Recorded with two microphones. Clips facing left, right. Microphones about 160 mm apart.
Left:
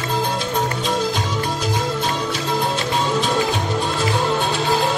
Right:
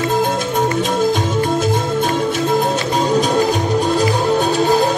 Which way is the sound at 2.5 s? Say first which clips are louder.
Right 5 dB; 45° right (ahead or behind).